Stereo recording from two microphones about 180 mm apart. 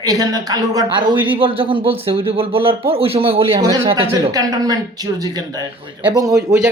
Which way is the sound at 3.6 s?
20° right (ahead or behind).